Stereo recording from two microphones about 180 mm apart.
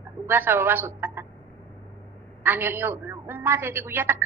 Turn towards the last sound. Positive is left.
turn(degrees=-10)  # may be behind; listen again after turning